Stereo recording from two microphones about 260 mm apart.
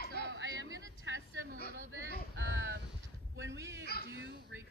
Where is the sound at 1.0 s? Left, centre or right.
Right.